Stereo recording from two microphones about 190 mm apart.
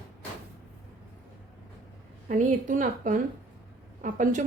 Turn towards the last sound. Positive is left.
turn(degrees=-40)  # may be behind; listen again after turning